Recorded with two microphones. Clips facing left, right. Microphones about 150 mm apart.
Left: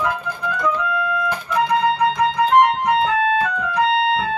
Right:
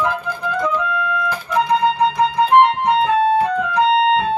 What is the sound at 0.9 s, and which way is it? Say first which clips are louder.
Music: even; 30° left (ahead or behind).